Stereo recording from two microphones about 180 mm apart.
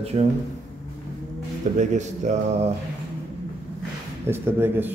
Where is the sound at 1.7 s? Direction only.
40° right (ahead or behind).